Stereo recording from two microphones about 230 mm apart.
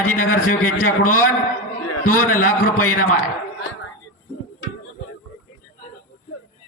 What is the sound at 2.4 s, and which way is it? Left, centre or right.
Speech, left.